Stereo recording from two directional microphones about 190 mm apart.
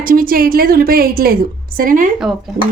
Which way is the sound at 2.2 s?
Centre (ahead or behind).